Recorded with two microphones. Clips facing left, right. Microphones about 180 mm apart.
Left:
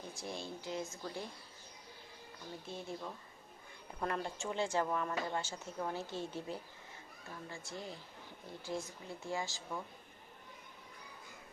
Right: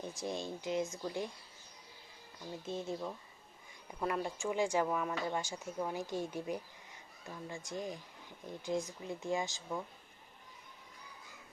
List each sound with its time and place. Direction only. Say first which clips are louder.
0.1 s speech: right 3 dB; 20° right (ahead or behind)
2.6 s speech: right 6 dB; 20° right (ahead or behind)